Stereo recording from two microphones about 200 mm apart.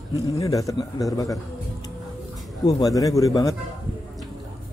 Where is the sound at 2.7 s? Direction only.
20° left (ahead or behind).